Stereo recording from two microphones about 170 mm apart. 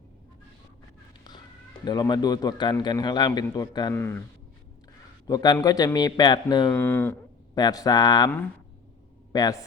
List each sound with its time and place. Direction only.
1.8 s a man's voice: 25° left (ahead or behind)
5.2 s a man's voice: 25° left (ahead or behind)
6.7 s speech: 10° left (ahead or behind)
7.5 s a man's voice: 20° left (ahead or behind)
9.3 s speech: 20° left (ahead or behind)